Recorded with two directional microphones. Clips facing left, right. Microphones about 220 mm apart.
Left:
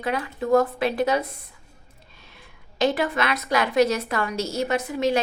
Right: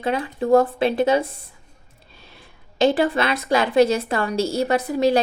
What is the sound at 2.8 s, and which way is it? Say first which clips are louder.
A woman's voice: right 4 dB; 30° right (ahead or behind).